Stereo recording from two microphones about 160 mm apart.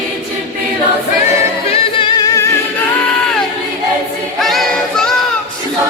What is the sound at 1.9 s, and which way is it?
Music, 30° left (ahead or behind).